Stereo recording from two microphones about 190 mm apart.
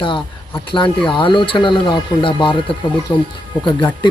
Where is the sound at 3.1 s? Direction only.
15° left (ahead or behind).